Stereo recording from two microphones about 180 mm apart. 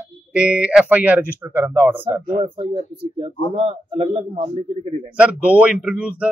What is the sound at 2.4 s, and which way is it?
A man's voice, 35° right (ahead or behind).